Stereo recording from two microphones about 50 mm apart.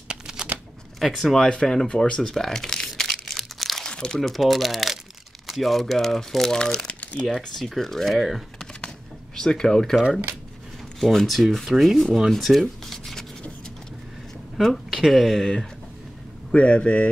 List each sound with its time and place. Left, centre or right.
0.1 s shuffling cards: centre
0.9 s speech: centre
1.5 s speech: centre
2.2 s speech: centre
3.0 s crunch: centre
3.9 s crumpling: centre
4.2 s speech: centre
6.6 s speech: centre
7.2 s speech: centre
8.8 s a sound: centre
11.0 s speech: centre
12.3 s rub: centre
14.6 s speech: centre
16.5 s speech: left